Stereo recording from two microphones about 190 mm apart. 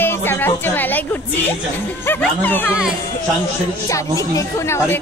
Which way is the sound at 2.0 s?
10° left (ahead or behind).